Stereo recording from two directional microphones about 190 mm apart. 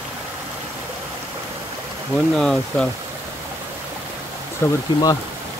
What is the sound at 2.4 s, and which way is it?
Speech, 5° left (ahead or behind).